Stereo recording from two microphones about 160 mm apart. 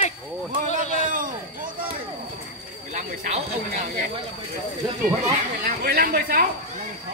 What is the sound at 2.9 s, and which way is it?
Speech, 50° right (ahead or behind).